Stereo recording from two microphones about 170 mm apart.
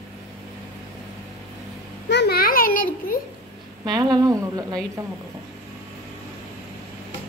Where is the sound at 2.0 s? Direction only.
80° left; by 3.1 s 55° left (ahead or behind).